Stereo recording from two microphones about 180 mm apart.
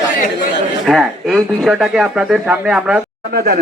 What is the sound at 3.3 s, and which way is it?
Speech, 60° right (ahead or behind).